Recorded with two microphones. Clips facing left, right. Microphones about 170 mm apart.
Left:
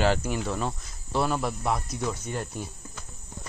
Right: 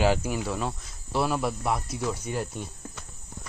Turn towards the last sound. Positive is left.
turn(degrees=-5)  # may be behind; listen again after turning